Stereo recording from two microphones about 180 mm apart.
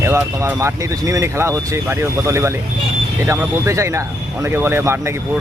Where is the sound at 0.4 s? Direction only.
15° right (ahead or behind).